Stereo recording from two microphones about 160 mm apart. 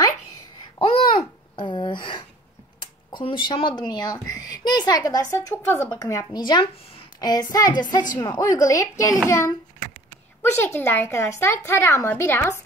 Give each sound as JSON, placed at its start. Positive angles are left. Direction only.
{"t": 0.7, "sound": "babbling", "side_deg": 30}
{"t": 3.1, "sound": "speech", "side_deg": 30}
{"t": 10.4, "sound": "a woman's voice", "side_deg": 15}